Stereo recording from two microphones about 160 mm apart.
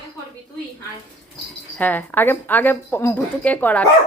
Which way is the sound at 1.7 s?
10° left (ahead or behind).